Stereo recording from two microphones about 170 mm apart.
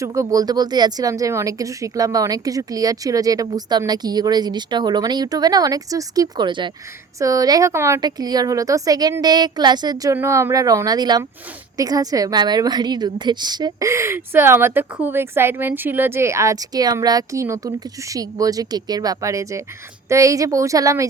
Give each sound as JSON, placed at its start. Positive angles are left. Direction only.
{"t": 0.0, "sound": "a woman's voice", "side_deg": -20}